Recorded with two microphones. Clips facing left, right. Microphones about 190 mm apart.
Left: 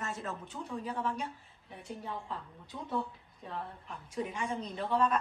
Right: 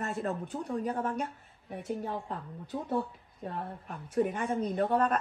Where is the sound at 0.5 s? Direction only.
60° right (ahead or behind).